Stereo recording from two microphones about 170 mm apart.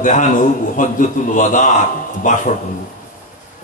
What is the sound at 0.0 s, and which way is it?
Speech, 50° left (ahead or behind).